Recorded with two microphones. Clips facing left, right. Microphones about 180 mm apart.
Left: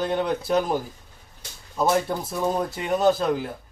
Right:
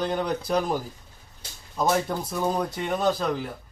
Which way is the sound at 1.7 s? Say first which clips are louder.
Left 2 dB; 5° left (ahead or behind).